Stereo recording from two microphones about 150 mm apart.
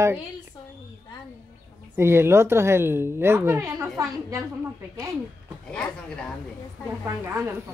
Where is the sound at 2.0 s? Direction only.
15° right (ahead or behind).